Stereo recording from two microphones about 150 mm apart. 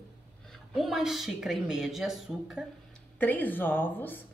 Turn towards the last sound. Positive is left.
turn(degrees=15)  # may be behind; listen again after turning